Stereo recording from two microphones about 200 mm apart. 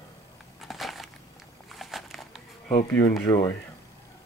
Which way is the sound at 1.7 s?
Centre (ahead or behind).